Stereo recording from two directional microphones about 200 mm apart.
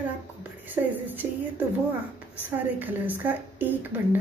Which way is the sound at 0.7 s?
10° right (ahead or behind).